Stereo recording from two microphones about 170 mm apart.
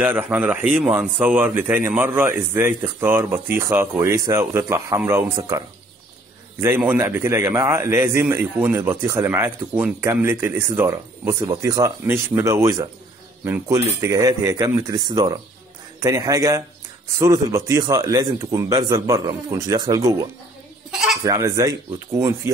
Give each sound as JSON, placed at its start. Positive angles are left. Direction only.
{"t": 0.0, "sound": "a man's voice", "side_deg": -10}
{"t": 6.6, "sound": "a man's voice", "side_deg": -10}